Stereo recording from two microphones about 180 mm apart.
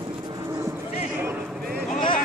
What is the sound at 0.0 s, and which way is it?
Vehicle, 25° right (ahead or behind).